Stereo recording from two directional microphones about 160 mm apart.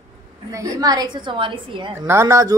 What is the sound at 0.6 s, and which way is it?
Speech, 25° right (ahead or behind).